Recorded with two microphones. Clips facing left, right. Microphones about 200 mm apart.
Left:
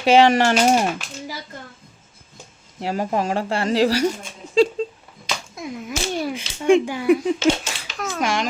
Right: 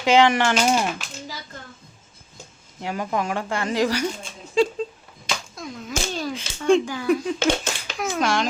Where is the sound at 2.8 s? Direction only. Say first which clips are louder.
Left 3 dB; 30° left (ahead or behind).